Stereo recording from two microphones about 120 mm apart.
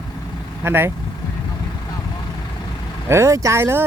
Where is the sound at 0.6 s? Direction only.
20° right (ahead or behind).